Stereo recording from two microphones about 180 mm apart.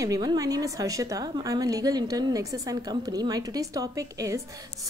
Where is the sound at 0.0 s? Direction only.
20° right (ahead or behind).